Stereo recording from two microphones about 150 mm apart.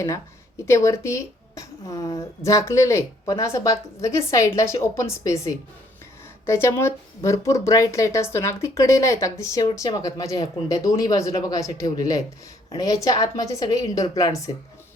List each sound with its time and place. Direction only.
0.6 s a woman's voice: 20° left (ahead or behind)